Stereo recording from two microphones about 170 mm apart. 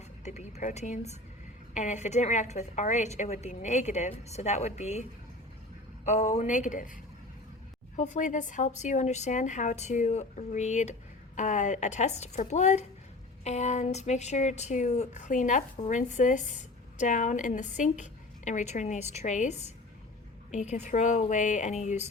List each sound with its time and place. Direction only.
0.3 s a woman's voice: 40° left (ahead or behind)
6.1 s a woman's voice: 40° left (ahead or behind)
7.9 s a woman's voice: 45° left (ahead or behind)